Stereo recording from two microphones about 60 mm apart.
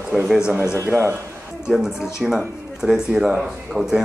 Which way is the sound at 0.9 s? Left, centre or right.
Centre.